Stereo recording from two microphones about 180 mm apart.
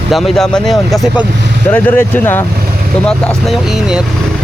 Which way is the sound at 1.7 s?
10° left (ahead or behind).